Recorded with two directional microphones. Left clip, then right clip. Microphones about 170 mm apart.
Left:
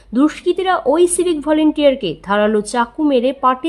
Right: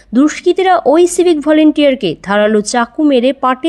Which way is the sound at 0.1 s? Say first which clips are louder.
Right 4 dB; 20° right (ahead or behind).